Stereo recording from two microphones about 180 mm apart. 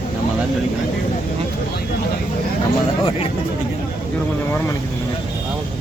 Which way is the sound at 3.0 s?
30° left (ahead or behind).